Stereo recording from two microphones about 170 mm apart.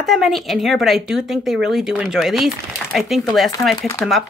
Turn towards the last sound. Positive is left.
turn(degrees=20)  # may be behind; listen again after turning